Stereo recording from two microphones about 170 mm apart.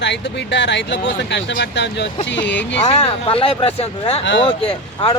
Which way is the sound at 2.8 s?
35° left (ahead or behind).